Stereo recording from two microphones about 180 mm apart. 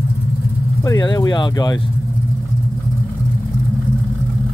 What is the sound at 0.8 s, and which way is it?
Speech, 25° left (ahead or behind).